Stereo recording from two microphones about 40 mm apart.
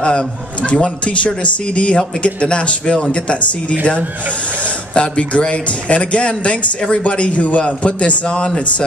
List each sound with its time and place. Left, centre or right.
0.0 s a man's voice: left
4.9 s a man's voice: left